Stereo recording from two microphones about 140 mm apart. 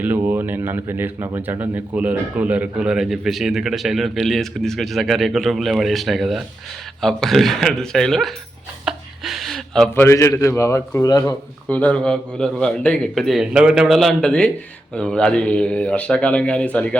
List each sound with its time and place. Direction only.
0.0 s a man's voice: 15° right (ahead or behind); by 8.3 s 5° left (ahead or behind)
8.8 s a sound: 5° right (ahead or behind)
9.9 s speech: 20° left (ahead or behind)
11.7 s a man's voice: 10° left (ahead or behind)